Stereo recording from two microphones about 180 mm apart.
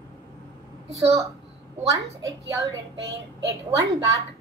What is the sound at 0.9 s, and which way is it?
Speech, 15° right (ahead or behind).